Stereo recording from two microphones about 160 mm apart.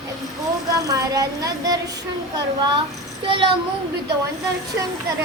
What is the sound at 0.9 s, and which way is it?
Speech, 20° right (ahead or behind).